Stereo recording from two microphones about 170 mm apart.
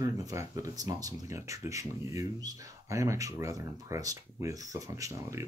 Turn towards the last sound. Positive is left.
turn(degrees=-20)  # may be behind; listen again after turning